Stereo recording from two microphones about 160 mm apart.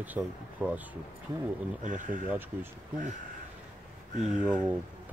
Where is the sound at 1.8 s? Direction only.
55° right (ahead or behind).